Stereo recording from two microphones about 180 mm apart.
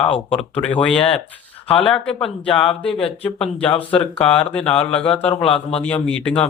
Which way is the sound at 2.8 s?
5° left (ahead or behind).